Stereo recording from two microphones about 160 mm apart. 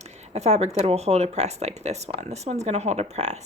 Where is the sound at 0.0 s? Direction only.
45° right (ahead or behind).